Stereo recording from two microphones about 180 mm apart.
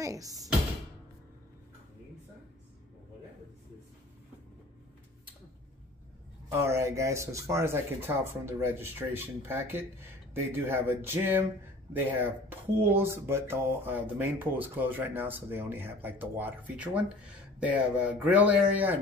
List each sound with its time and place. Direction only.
0.0 s speech: 20° right (ahead or behind)
6.5 s speech: 15° right (ahead or behind)